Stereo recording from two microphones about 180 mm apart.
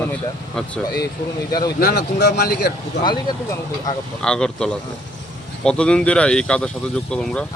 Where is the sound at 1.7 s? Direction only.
60° left (ahead or behind).